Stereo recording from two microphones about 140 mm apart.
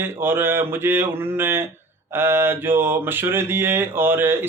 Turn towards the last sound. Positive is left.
turn(degrees=-15)  # may be behind; listen again after turning